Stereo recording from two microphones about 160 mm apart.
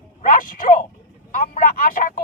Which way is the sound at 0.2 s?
55° left (ahead or behind).